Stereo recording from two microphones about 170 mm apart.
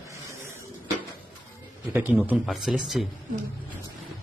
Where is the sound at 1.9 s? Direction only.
10° right (ahead or behind).